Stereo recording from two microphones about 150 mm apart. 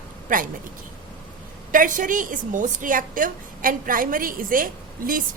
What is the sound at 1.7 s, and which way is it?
A woman's voice, 60° right (ahead or behind).